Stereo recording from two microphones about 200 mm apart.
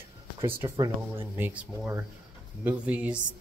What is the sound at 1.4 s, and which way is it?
Speech, 10° right (ahead or behind).